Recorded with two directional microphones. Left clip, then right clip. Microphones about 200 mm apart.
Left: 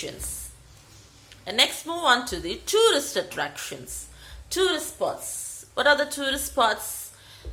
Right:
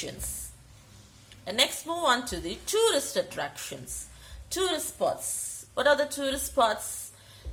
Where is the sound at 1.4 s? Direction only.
10° right (ahead or behind).